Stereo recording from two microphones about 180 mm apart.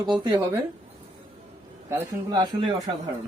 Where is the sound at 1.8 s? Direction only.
15° right (ahead or behind).